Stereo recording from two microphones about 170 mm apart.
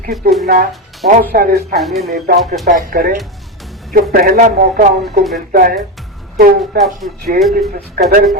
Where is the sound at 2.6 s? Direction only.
50° right (ahead or behind).